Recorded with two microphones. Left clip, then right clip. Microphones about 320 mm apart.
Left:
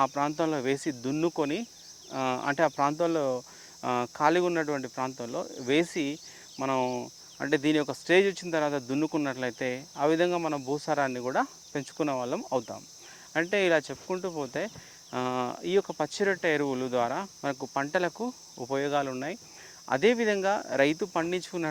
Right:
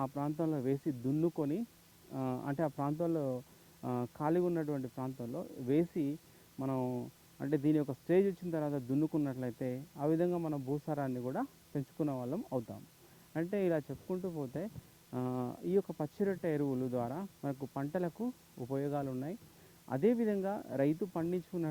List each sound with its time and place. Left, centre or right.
0.0 s speech: centre
13.3 s speech: centre